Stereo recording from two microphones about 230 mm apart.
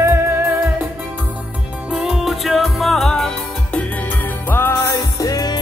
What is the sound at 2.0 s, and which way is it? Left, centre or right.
Music, centre.